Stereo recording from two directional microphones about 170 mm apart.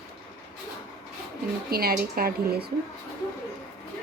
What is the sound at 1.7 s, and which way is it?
A woman's voice, 60° right (ahead or behind).